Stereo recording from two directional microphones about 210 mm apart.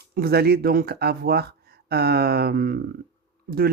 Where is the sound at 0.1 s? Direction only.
50° right (ahead or behind).